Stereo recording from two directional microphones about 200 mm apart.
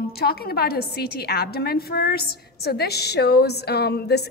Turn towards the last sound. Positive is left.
turn(degrees=55)  # may be behind; listen again after turning